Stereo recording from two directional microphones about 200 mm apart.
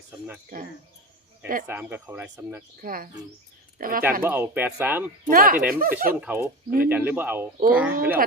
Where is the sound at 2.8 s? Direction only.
45° right (ahead or behind).